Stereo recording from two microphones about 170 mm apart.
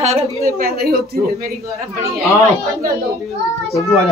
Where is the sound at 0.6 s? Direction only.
60° right (ahead or behind).